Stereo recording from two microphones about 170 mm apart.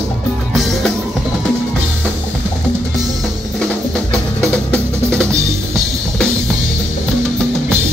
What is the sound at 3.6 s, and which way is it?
Drum, 5° left (ahead or behind).